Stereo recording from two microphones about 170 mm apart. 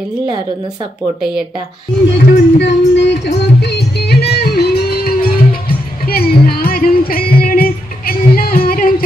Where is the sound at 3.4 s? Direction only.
80° left.